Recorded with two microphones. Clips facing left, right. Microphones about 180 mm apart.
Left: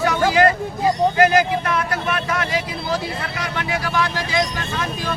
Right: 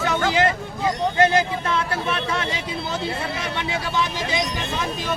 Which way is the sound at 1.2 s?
25° right (ahead or behind).